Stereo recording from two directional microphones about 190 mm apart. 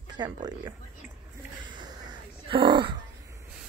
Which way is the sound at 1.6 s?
25° right (ahead or behind).